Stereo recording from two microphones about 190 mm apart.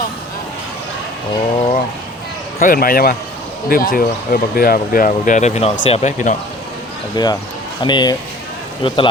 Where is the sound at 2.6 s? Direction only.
50° left (ahead or behind).